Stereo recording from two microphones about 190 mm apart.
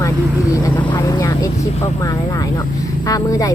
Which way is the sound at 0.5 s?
20° left (ahead or behind).